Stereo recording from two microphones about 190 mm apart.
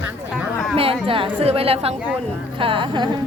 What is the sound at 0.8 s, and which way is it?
A woman's voice, 30° right (ahead or behind).